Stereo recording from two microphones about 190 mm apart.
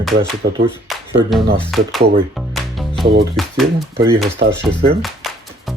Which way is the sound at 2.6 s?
Centre (ahead or behind).